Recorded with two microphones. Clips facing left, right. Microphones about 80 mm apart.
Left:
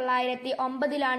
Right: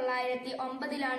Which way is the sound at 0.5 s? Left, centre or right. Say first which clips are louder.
Left 8 dB; left.